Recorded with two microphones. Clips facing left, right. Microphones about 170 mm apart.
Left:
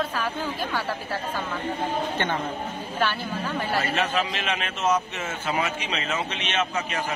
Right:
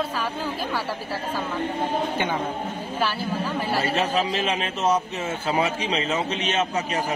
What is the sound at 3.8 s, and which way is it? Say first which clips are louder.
A man's voice: right 2 dB; 35° right (ahead or behind).